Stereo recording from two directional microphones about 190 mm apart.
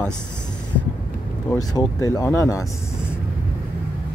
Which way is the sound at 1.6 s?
20° left (ahead or behind).